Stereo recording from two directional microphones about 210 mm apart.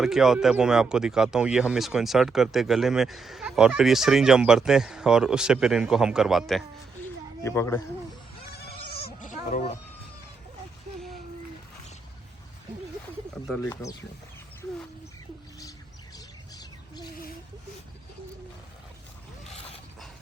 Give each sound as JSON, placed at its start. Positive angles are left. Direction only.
{"t": 0.0, "sound": "speech", "side_deg": 0}
{"t": 7.4, "sound": "speech", "side_deg": 15}
{"t": 8.9, "sound": "bleat", "side_deg": 50}
{"t": 9.5, "sound": "speech", "side_deg": 35}
{"t": 13.5, "sound": "speech", "side_deg": 15}
{"t": 16.1, "sound": "a sound", "side_deg": 20}